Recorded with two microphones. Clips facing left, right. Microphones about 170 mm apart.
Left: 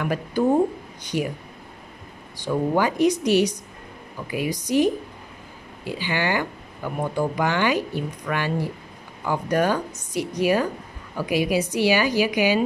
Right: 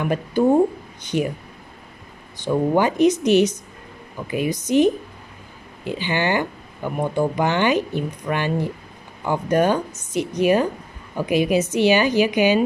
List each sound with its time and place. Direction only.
0.0 s a woman's voice: 25° right (ahead or behind)
2.3 s a woman's voice: 20° right (ahead or behind)